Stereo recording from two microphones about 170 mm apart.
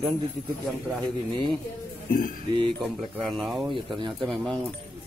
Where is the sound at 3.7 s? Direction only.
25° right (ahead or behind).